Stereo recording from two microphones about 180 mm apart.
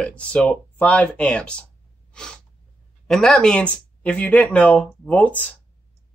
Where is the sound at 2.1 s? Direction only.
5° left (ahead or behind).